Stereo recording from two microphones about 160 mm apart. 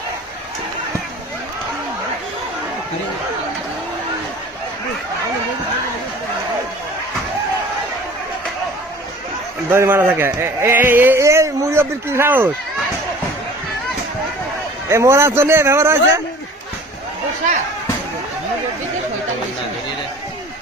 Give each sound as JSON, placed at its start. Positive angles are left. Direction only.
{"t": 9.6, "sound": "a man's voice", "side_deg": -15}
{"t": 14.8, "sound": "a man's voice", "side_deg": -15}